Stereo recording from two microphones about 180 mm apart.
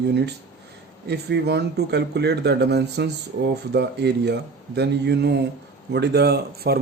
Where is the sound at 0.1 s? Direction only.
65° right (ahead or behind).